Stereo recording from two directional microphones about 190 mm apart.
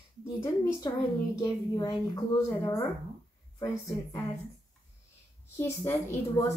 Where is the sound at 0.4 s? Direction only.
20° left (ahead or behind).